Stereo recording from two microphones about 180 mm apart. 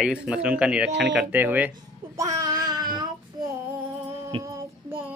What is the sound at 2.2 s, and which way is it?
Child singing, 20° right (ahead or behind).